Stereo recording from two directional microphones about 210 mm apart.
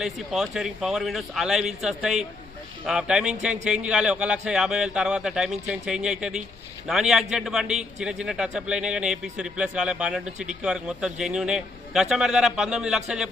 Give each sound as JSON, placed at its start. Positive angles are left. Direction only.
{"t": 0.0, "sound": "a man's voice", "side_deg": 0}